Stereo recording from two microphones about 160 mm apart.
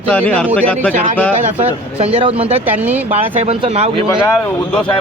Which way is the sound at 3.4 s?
40° right (ahead or behind).